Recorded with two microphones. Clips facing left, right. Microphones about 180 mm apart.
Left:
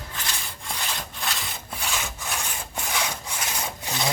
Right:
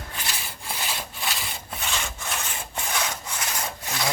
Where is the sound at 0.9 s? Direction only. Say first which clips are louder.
Even; centre (ahead or behind).